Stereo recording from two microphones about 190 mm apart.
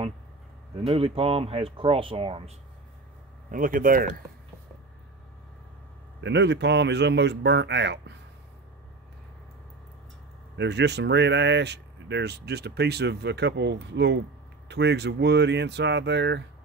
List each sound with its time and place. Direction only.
0.8 s speech: 30° right (ahead or behind)
3.5 s speech: 45° right (ahead or behind)
6.2 s speech: 65° right (ahead or behind)
10.6 s speech: 65° right (ahead or behind)